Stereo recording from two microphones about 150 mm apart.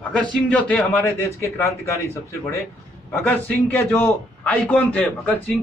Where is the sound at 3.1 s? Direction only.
10° left (ahead or behind).